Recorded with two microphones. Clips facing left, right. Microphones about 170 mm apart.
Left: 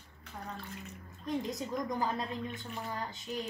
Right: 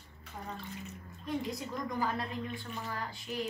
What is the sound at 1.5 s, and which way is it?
A woman's voice, 20° left (ahead or behind).